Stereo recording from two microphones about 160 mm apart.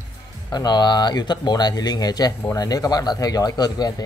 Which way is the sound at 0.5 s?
25° left (ahead or behind).